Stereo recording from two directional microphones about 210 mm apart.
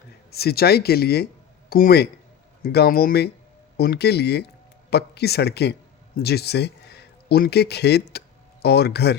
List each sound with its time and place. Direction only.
0.3 s speech: 50° left (ahead or behind)